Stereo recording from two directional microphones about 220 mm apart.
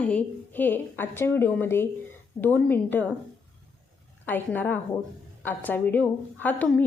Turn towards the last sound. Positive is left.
turn(degrees=5)  # may be behind; listen again after turning